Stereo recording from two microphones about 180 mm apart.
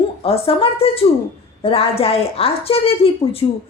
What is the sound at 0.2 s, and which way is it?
A woman's voice, 30° left (ahead or behind).